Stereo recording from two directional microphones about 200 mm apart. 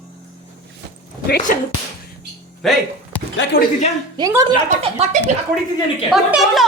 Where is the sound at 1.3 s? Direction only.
45° left (ahead or behind).